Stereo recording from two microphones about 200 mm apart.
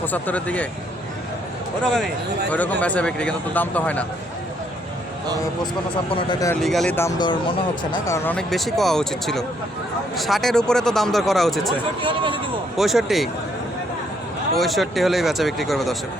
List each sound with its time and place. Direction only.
0.0 s speech: 10° left (ahead or behind)
1.8 s speech: 5° left (ahead or behind)
6.1 s speech: 15° left (ahead or behind)
6.6 s speech: centre (ahead or behind)
7.2 s speech: 20° left (ahead or behind)
8.0 s speech: 10° left (ahead or behind)
12.0 s speech: 25° right (ahead or behind)
12.7 s speech: centre (ahead or behind)
14.5 s speech: centre (ahead or behind)